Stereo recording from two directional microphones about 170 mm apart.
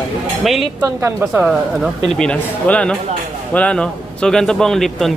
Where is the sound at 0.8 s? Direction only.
15° right (ahead or behind).